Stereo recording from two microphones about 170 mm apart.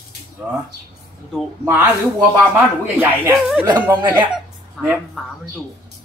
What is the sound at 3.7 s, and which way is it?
Speech, 25° right (ahead or behind).